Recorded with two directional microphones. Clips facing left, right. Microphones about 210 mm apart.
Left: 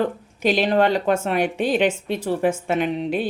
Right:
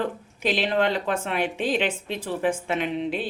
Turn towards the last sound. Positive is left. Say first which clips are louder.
# left 4 dB
turn(degrees=45)  # may be behind; listen again after turning